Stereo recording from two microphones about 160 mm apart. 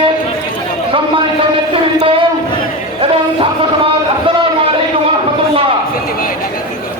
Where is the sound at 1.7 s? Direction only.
35° right (ahead or behind).